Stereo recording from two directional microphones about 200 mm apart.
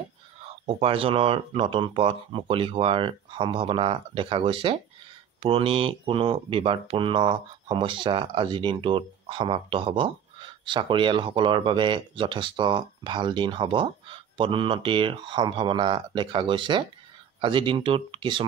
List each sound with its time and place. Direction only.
0.7 s speech: 25° right (ahead or behind)